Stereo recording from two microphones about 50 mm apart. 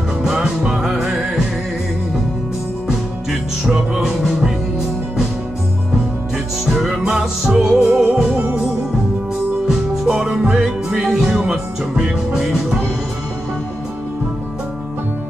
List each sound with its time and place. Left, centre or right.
0.2 s music: centre
2.9 s music: centre
6.3 s music: centre
7.9 s music: right
9.7 s music: centre